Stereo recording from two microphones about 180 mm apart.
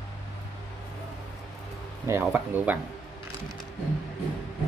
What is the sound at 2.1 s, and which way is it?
Speech, 10° right (ahead or behind).